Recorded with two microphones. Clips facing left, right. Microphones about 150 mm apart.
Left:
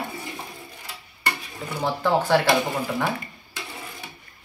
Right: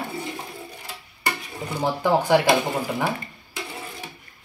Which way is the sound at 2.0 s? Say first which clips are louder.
Right 2 dB; 15° right (ahead or behind).